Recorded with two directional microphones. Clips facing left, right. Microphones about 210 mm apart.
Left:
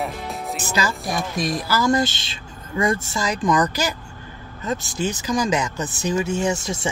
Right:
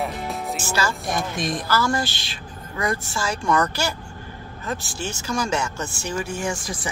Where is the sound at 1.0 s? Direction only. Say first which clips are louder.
Left 1 dB; centre (ahead or behind).